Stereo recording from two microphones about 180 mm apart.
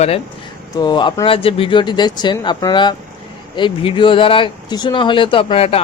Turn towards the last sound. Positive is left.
turn(degrees=30)  # may be behind; listen again after turning